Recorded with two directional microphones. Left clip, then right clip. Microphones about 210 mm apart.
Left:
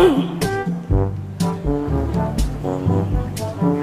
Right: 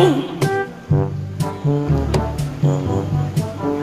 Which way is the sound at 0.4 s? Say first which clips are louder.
Right 2 dB; centre (ahead or behind).